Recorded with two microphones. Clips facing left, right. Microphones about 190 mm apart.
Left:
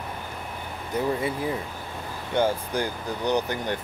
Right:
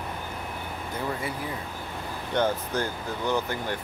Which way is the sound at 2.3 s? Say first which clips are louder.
Left 2 dB; 10° left (ahead or behind).